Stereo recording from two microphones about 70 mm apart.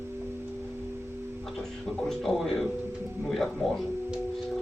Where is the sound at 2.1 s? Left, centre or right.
Centre.